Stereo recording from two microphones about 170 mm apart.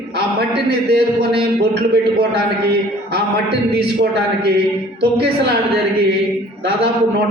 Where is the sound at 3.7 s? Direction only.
75° right (ahead or behind).